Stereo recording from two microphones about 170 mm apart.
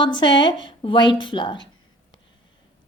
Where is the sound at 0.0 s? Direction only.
30° left (ahead or behind).